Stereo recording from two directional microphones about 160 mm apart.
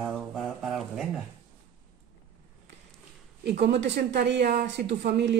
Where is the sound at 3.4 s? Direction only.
90° right.